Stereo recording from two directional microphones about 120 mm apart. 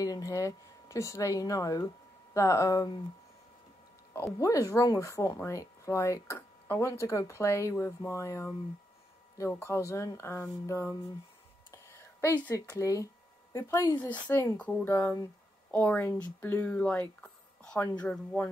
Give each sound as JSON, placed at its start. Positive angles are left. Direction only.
{"t": 0.0, "sound": "speech", "side_deg": 30}
{"t": 4.1, "sound": "speech", "side_deg": 25}
{"t": 11.7, "sound": "a sound", "side_deg": 25}
{"t": 12.5, "sound": "speech", "side_deg": 25}
{"t": 13.9, "sound": "speech", "side_deg": 15}